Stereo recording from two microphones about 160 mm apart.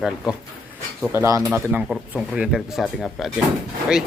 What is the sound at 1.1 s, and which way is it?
Speech, 15° right (ahead or behind).